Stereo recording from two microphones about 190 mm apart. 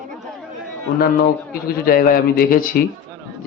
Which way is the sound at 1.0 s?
50° left (ahead or behind).